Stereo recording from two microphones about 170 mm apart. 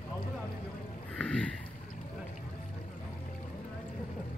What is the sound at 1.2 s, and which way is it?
Boat, 5° left (ahead or behind).